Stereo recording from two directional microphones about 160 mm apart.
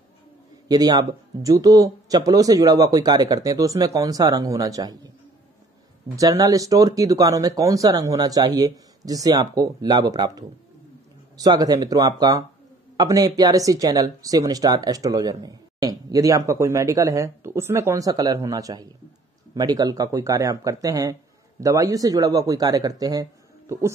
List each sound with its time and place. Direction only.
0.7 s speech: 25° right (ahead or behind)
6.1 s a man's voice: 20° right (ahead or behind)